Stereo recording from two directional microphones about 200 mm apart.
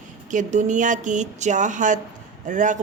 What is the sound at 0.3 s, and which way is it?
A woman's voice, 40° right (ahead or behind).